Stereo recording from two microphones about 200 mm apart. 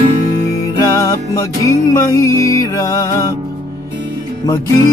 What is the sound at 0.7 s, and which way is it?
Music, 15° left (ahead or behind).